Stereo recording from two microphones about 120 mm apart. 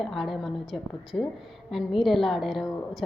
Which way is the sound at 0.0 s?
Centre (ahead or behind).